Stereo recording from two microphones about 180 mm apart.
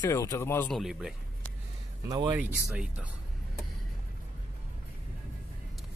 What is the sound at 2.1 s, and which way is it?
Speech, 20° right (ahead or behind).